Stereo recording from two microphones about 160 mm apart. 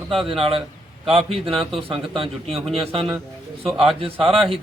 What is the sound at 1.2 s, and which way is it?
Speech, 35° right (ahead or behind).